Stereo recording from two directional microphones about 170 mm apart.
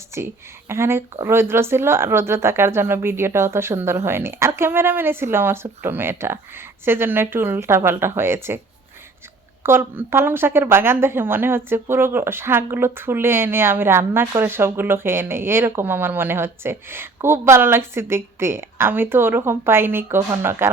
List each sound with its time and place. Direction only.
0.1 s a woman's voice: 15° right (ahead or behind)
9.6 s speech: 15° right (ahead or behind)